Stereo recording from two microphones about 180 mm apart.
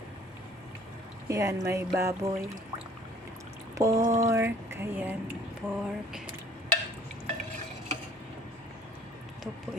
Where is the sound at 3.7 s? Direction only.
20° right (ahead or behind).